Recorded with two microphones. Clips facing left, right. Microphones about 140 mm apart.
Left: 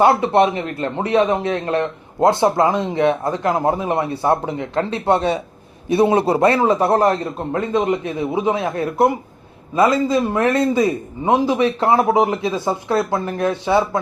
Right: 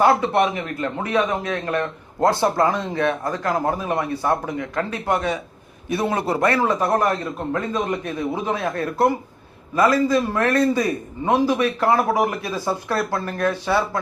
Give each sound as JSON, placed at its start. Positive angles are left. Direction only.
{"t": 0.0, "sound": "a man's voice", "side_deg": 20}